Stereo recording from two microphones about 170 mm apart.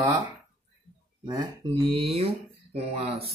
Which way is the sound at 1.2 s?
25° right (ahead or behind).